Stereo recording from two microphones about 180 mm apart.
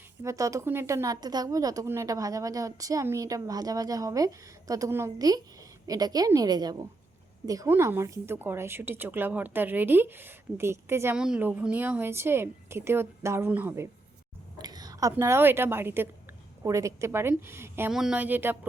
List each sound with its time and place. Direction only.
0.2 s a woman's voice: 15° right (ahead or behind)
14.6 s a sound: 20° right (ahead or behind)
15.1 s a woman's voice: 15° right (ahead or behind)